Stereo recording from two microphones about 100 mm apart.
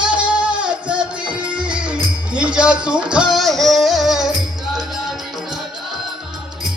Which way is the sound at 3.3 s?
Centre (ahead or behind).